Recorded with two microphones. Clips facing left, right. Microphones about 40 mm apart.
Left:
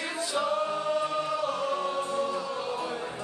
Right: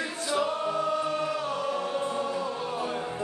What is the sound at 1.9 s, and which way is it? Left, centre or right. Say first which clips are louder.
Choir: even; right.